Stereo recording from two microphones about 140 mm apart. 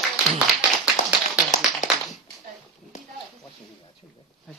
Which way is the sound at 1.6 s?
Centre (ahead or behind).